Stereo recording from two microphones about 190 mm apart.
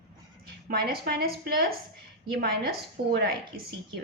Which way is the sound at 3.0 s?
50° right (ahead or behind).